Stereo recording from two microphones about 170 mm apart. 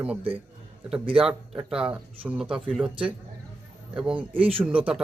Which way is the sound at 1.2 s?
5° right (ahead or behind).